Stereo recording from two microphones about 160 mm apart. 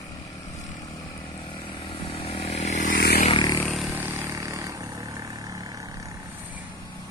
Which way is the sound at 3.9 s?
15° right (ahead or behind).